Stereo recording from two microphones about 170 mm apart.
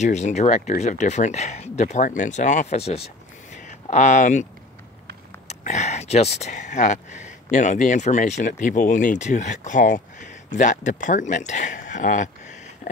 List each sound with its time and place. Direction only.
0.0 s speech: 45° left (ahead or behind)
5.5 s speech: 40° left (ahead or behind)